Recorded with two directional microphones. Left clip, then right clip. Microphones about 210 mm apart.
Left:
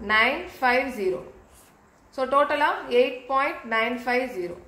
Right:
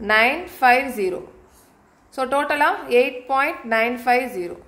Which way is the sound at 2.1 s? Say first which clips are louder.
Right 2 dB; 50° right (ahead or behind).